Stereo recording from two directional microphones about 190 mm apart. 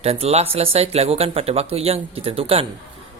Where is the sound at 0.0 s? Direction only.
30° right (ahead or behind).